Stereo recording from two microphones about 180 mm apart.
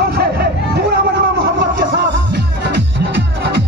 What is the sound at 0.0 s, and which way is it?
Hubbub, 60° right (ahead or behind).